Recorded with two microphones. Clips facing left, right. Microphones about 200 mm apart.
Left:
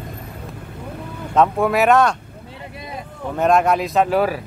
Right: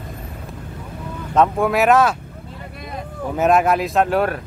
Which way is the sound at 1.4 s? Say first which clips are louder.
Even; centre (ahead or behind).